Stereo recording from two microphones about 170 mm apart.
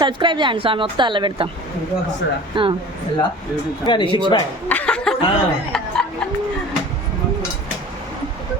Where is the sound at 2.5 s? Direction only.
30° right (ahead or behind).